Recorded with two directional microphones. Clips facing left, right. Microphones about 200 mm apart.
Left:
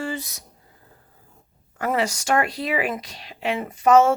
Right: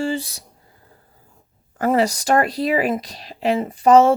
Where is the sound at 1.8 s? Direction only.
35° right (ahead or behind).